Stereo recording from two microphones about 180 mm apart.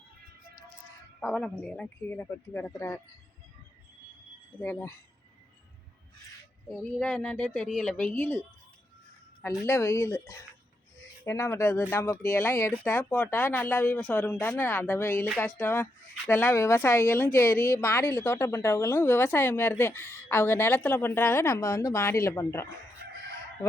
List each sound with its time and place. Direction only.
1.2 s speech: 5° left (ahead or behind)
4.6 s speech: 10° left (ahead or behind)
6.7 s speech: 5° left (ahead or behind)
9.4 s speech: 15° left (ahead or behind)